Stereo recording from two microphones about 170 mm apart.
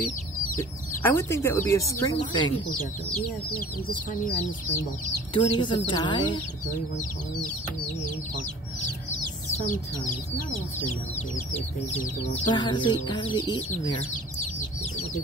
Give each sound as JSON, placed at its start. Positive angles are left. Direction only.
{"t": 0.6, "sound": "speech", "side_deg": 15}
{"t": 5.3, "sound": "speech", "side_deg": 30}
{"t": 12.5, "sound": "speech", "side_deg": 25}